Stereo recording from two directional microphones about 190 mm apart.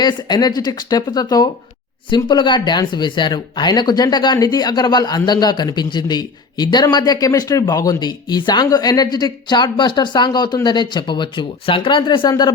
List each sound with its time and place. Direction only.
0.0 s speech: 20° left (ahead or behind)